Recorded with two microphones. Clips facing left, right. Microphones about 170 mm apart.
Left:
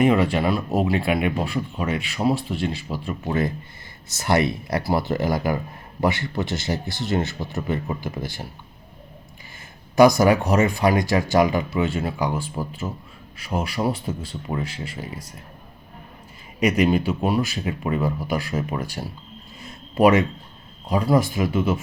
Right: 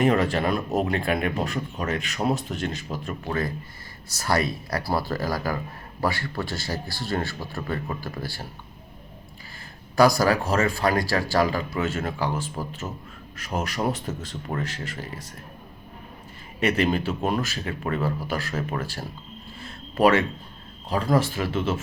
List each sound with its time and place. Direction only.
0.3 s speech: 5° left (ahead or behind)
1.9 s a man's voice: 40° right (ahead or behind)
2.9 s speech: centre (ahead or behind)
3.2 s speech: 25° left (ahead or behind)
9.9 s speech: 20° left (ahead or behind)
16.6 s speech: 15° left (ahead or behind)
19.6 s a sound: 15° left (ahead or behind)
20.9 s speech: 15° left (ahead or behind)